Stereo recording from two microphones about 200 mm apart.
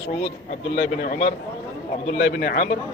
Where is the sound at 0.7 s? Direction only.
45° left (ahead or behind).